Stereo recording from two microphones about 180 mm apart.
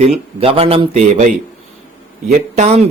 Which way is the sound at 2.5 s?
40° right (ahead or behind).